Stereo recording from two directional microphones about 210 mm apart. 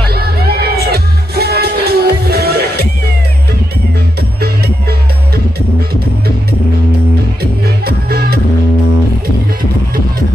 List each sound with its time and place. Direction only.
0.1 s music: 50° right (ahead or behind)
7.6 s music: 50° right (ahead or behind)